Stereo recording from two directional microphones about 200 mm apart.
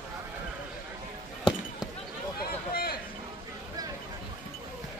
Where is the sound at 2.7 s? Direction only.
50° left (ahead or behind).